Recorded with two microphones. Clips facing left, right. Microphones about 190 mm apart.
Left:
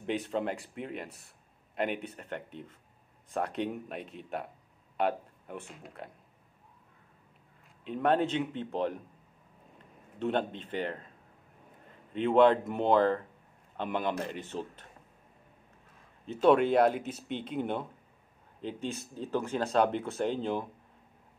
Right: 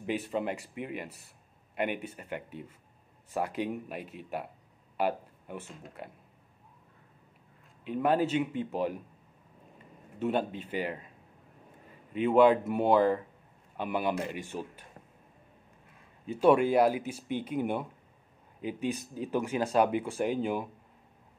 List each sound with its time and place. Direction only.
0.0 s speech: 5° right (ahead or behind)
7.8 s speech: 5° right (ahead or behind)
10.1 s speech: 5° right (ahead or behind)
12.1 s speech: 5° right (ahead or behind)
16.3 s speech: 10° right (ahead or behind)